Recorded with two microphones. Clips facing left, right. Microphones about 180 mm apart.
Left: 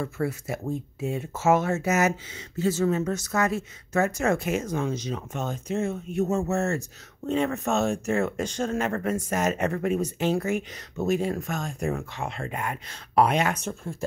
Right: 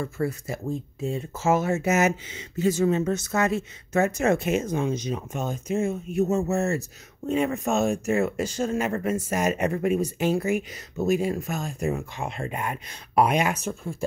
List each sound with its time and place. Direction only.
0.0 s speech: 5° left (ahead or behind)
1.7 s speech: 20° right (ahead or behind); by 12.3 s 5° right (ahead or behind)
12.3 s speech: 15° right (ahead or behind)